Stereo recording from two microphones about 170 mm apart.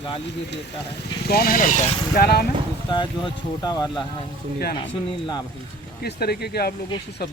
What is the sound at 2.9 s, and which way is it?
Speech, 25° left (ahead or behind).